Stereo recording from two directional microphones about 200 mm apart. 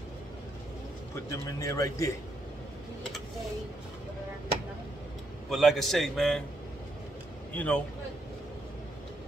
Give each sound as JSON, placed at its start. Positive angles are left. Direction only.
{"t": 1.3, "sound": "a man's voice", "side_deg": 15}
{"t": 5.5, "sound": "a man's voice", "side_deg": 0}
{"t": 7.5, "sound": "a man's voice", "side_deg": 5}